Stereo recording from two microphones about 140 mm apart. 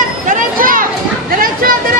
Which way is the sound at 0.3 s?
80° right.